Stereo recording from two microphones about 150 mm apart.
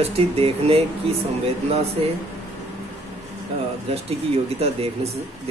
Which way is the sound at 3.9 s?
40° right (ahead or behind).